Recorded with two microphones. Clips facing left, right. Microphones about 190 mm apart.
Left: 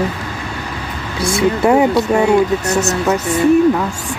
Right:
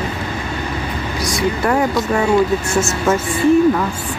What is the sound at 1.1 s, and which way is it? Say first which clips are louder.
Speech: left 5 dB; 30° left (ahead or behind).